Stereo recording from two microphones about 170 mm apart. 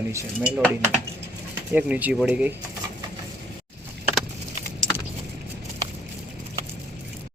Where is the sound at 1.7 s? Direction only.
10° right (ahead or behind).